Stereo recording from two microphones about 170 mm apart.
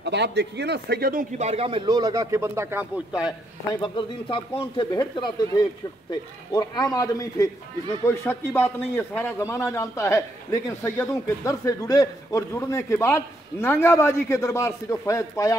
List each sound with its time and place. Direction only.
0.0 s a man's voice: 90° right; by 1.2 s 65° right (ahead or behind)
1.4 s speech: 35° right (ahead or behind); by 2.9 s 15° right (ahead or behind)
3.8 s a man's voice: 30° left (ahead or behind)